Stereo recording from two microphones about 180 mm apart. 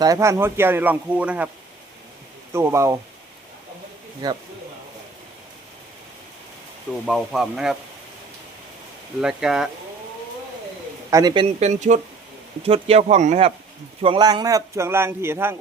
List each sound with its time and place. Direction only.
0.0 s speech: 15° right (ahead or behind)
2.5 s speech: 15° right (ahead or behind)
4.2 s speech: 20° right (ahead or behind)
7.1 s speech: 5° right (ahead or behind)
9.2 s speech: 5° right (ahead or behind)
11.1 s speech: 20° right (ahead or behind)
11.6 s speech: 40° right (ahead or behind)
14.0 s speech: 25° right (ahead or behind)